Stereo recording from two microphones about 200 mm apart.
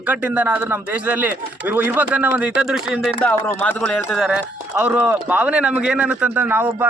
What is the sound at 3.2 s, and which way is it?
A man's voice, 10° left (ahead or behind).